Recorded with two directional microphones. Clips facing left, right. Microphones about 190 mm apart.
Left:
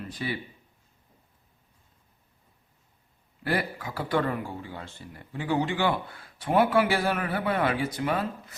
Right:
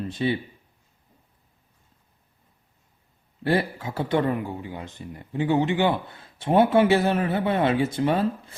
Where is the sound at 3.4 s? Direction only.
25° right (ahead or behind).